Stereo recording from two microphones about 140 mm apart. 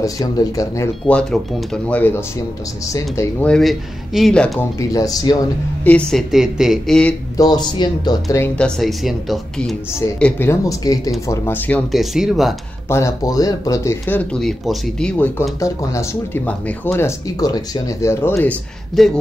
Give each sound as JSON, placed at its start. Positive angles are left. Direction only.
{"t": 0.0, "sound": "speech", "side_deg": 25}
{"t": 1.0, "sound": "speech", "side_deg": 5}
{"t": 3.4, "sound": "speech", "side_deg": 0}
{"t": 4.7, "sound": "speech", "side_deg": 25}
{"t": 5.9, "sound": "speech", "side_deg": 5}
{"t": 7.3, "sound": "speech", "side_deg": 30}
{"t": 8.5, "sound": "speech", "side_deg": 5}
{"t": 10.5, "sound": "speech", "side_deg": 25}
{"t": 11.9, "sound": "speech", "side_deg": 0}
{"t": 12.8, "sound": "speech", "side_deg": 20}
{"t": 14.4, "sound": "speech", "side_deg": 0}
{"t": 19.0, "sound": "speech", "side_deg": 0}